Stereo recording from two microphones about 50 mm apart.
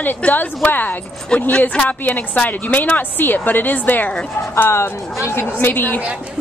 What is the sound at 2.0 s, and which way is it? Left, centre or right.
Speech, left.